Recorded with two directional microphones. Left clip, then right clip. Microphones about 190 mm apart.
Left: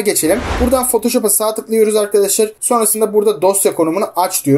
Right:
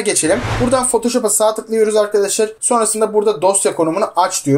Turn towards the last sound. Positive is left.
turn(degrees=20)  # may be behind; listen again after turning